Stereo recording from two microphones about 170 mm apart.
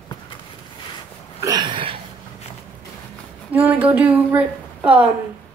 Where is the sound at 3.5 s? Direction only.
10° right (ahead or behind).